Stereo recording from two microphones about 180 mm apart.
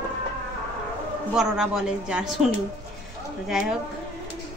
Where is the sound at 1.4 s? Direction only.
5° right (ahead or behind).